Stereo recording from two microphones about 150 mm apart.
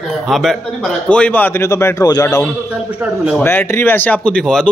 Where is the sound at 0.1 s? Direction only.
Centre (ahead or behind); by 2.5 s 20° left (ahead or behind).